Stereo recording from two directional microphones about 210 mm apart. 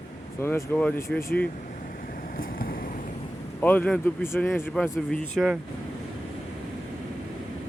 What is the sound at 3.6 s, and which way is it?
Speech, 10° left (ahead or behind).